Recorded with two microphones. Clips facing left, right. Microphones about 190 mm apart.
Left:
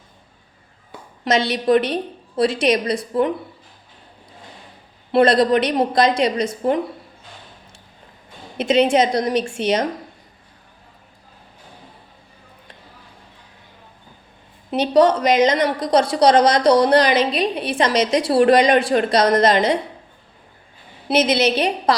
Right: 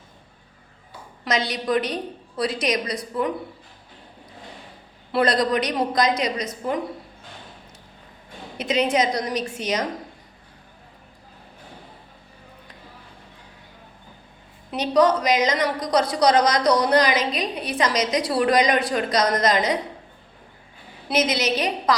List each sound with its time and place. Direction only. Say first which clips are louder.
1.2 s a woman's voice: left 6 dB; 25° left (ahead or behind)
5.1 s a woman's voice: left 6 dB; 25° left (ahead or behind)
8.5 s a woman's voice: left 6 dB; 25° left (ahead or behind)
14.7 s a woman's voice: left 4 dB; 30° left (ahead or behind)
21.1 s a woman's voice: left 5 dB; 30° left (ahead or behind)